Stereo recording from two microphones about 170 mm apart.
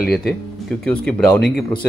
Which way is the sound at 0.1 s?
Centre (ahead or behind).